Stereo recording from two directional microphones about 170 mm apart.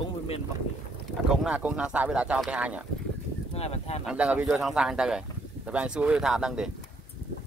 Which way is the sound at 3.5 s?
40° left (ahead or behind).